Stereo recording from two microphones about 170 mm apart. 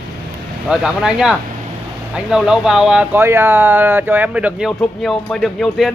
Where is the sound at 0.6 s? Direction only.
5° right (ahead or behind).